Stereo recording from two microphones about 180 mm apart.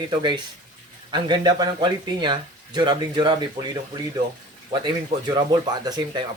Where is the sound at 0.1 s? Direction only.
25° right (ahead or behind).